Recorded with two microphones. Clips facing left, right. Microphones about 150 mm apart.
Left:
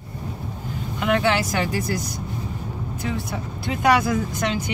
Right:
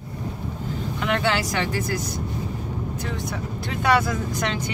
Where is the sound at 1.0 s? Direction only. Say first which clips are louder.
Left 3 dB; centre (ahead or behind).